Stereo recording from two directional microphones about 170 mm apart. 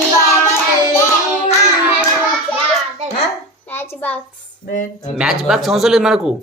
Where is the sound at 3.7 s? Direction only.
10° left (ahead or behind).